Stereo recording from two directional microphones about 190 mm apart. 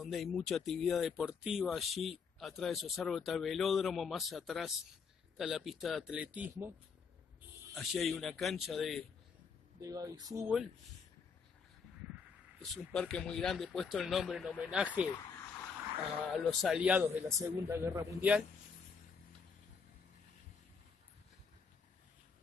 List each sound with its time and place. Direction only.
0.0 s speech: centre (ahead or behind)
7.7 s speech: centre (ahead or behind)
9.8 s speech: 20° right (ahead or behind)
12.7 s speech: centre (ahead or behind)
16.3 s speech: 5° right (ahead or behind)